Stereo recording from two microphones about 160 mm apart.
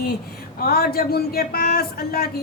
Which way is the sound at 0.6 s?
70° left (ahead or behind).